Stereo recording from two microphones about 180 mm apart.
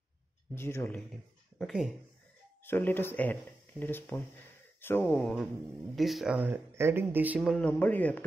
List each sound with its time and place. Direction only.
0.6 s speech: 15° left (ahead or behind)
1.6 s speech: 5° right (ahead or behind)
2.6 s speech: 10° left (ahead or behind)